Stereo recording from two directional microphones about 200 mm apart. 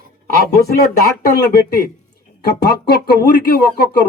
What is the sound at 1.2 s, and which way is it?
Speech, 50° left (ahead or behind).